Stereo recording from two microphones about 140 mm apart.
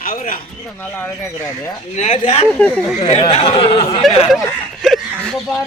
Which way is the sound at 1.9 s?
55° left (ahead or behind).